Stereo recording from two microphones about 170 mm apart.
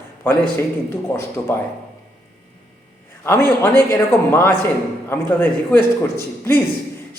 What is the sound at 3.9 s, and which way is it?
A man's voice, 15° left (ahead or behind).